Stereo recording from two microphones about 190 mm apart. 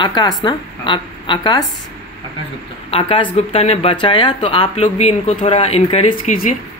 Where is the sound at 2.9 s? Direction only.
30° left (ahead or behind).